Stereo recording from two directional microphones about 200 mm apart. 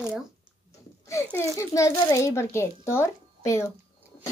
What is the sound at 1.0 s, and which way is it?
A child's voice, 15° left (ahead or behind).